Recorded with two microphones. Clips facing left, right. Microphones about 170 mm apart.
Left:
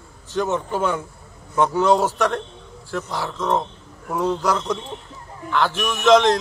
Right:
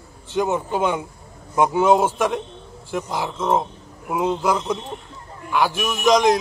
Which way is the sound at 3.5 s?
10° right (ahead or behind).